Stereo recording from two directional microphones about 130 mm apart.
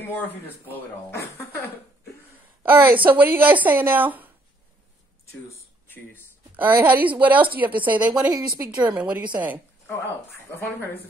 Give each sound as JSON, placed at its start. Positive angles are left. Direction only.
{"t": 0.0, "sound": "speech", "side_deg": 15}
{"t": 2.6, "sound": "a woman's voice", "side_deg": -15}
{"t": 6.5, "sound": "a woman's voice", "side_deg": -15}
{"t": 8.3, "sound": "a woman's voice", "side_deg": -30}
{"t": 8.6, "sound": "a woman's voice", "side_deg": -10}
{"t": 10.5, "sound": "speech", "side_deg": 15}